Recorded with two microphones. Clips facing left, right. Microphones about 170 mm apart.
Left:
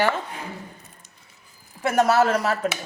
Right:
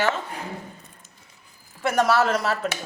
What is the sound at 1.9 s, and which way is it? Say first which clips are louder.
Speech: left 2 dB; 50° left (ahead or behind).